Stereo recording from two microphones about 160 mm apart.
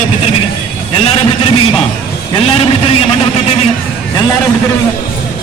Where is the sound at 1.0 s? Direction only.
35° left (ahead or behind).